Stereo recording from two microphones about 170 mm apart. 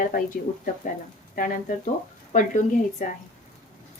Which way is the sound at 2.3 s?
50° left (ahead or behind).